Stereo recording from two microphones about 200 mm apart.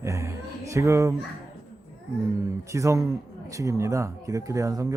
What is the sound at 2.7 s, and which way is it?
A man's voice, 15° right (ahead or behind).